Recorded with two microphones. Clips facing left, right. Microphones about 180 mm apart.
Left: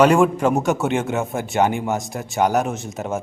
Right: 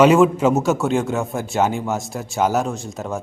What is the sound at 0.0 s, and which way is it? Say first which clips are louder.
Speech: right 2 dB; 5° right (ahead or behind).